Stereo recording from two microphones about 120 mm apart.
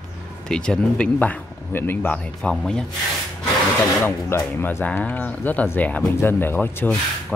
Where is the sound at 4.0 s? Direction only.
20° left (ahead or behind).